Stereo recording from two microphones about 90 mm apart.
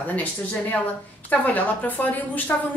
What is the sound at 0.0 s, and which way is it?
A woman's voice, 15° left (ahead or behind).